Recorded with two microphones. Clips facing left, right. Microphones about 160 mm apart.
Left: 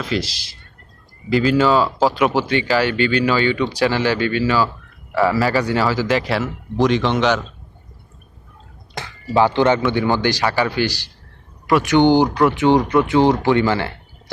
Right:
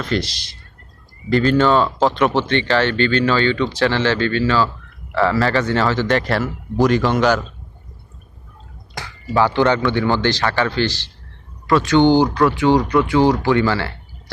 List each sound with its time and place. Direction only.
0.0 s speech: centre (ahead or behind)
9.3 s speech: 20° left (ahead or behind)